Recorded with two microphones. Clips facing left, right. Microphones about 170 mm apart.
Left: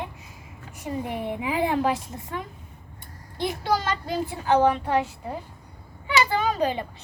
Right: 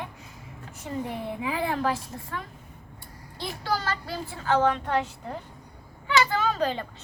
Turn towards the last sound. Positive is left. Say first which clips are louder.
# left 2 dB
turn(degrees=15)  # may be behind; listen again after turning